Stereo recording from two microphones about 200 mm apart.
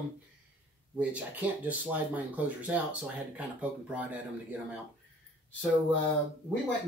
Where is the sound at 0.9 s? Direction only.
5° right (ahead or behind).